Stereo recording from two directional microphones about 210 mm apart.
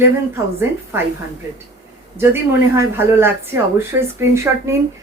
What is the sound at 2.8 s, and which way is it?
Speech, 10° right (ahead or behind).